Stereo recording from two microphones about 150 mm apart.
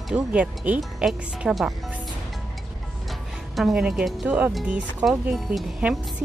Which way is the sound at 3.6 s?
Centre (ahead or behind).